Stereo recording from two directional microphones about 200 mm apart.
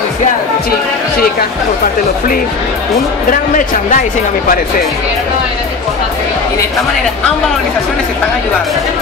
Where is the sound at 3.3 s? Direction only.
45° left (ahead or behind).